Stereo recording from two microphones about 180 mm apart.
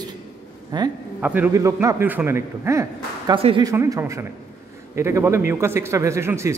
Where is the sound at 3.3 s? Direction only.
30° right (ahead or behind).